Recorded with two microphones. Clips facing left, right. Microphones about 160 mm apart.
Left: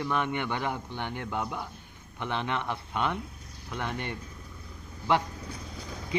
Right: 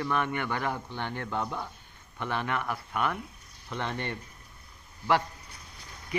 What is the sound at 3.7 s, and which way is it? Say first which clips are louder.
Speech: right 1 dB; 10° left (ahead or behind).